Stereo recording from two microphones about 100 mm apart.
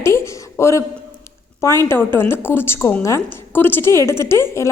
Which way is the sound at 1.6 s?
25° left (ahead or behind).